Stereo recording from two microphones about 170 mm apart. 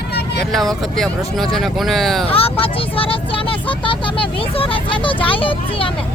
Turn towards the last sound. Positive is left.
turn(degrees=30)  # may be behind; listen again after turning